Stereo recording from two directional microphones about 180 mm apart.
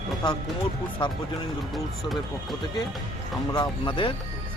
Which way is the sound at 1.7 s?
Centre (ahead or behind).